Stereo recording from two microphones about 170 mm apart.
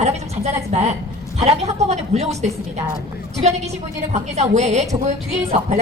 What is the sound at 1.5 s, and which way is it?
A woman's voice, 40° right (ahead or behind).